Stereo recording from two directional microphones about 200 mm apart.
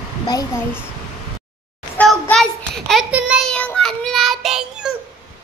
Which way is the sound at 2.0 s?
5° left (ahead or behind).